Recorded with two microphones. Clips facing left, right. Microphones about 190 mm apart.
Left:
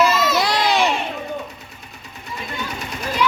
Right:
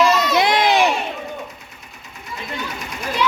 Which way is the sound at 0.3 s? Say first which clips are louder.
Right 3 dB; 20° right (ahead or behind).